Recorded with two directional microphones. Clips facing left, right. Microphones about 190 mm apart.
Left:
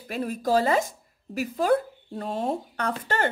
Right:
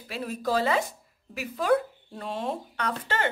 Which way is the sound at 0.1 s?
45° left (ahead or behind).